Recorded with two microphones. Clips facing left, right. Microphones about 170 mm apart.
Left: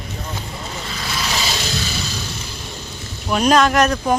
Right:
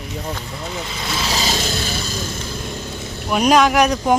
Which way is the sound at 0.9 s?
20° right (ahead or behind).